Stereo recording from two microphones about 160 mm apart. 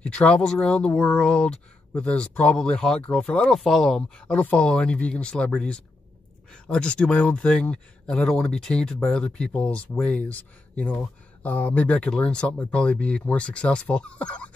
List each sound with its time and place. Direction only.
0.0 s speech: 5° left (ahead or behind)